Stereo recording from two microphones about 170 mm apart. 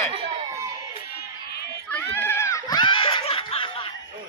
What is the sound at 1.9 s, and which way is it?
Laughter, 10° left (ahead or behind).